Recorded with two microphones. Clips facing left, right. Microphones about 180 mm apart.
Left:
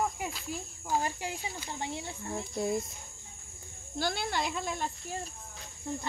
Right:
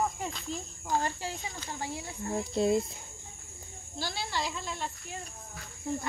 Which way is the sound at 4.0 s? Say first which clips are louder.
Left 3 dB; 55° left (ahead or behind).